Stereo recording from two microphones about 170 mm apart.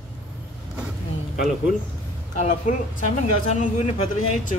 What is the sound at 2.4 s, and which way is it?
Speech, 45° left (ahead or behind).